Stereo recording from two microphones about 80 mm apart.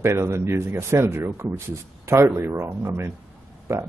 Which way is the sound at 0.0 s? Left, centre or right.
Right.